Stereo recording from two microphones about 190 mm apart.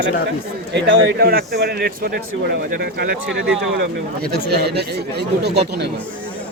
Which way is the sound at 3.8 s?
55° right (ahead or behind).